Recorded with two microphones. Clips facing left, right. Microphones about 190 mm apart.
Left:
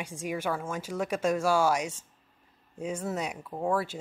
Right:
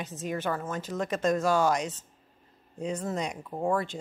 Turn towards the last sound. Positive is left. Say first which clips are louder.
# right 1 dB
turn(degrees=-5)  # may be behind; listen again after turning